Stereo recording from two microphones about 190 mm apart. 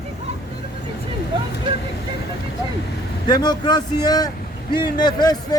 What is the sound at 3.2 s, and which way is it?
A man's voice, 20° left (ahead or behind).